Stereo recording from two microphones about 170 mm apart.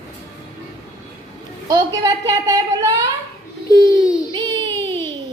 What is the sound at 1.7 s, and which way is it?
A woman's voice, 20° right (ahead or behind).